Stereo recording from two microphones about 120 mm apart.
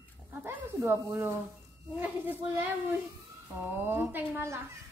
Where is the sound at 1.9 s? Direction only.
15° right (ahead or behind).